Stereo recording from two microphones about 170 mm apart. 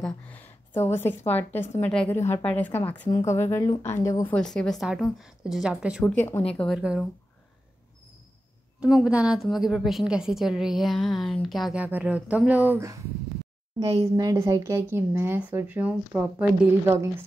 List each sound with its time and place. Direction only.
0.0 s a woman's voice: 10° left (ahead or behind)
4.4 s a woman's voice: 5° left (ahead or behind)
6.1 s a woman's voice: 15° left (ahead or behind); by 7.1 s 5° right (ahead or behind)
8.7 s a woman's voice: 5° right (ahead or behind)